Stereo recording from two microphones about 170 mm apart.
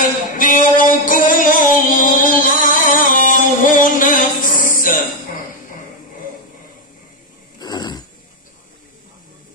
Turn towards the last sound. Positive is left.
turn(degrees=25)  # may be behind; listen again after turning